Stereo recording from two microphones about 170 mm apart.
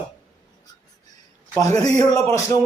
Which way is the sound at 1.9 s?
20° left (ahead or behind).